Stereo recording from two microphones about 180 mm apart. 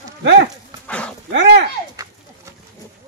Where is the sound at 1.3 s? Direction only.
70° right (ahead or behind).